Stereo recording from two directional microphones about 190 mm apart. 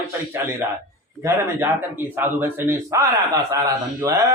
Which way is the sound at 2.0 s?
10° right (ahead or behind).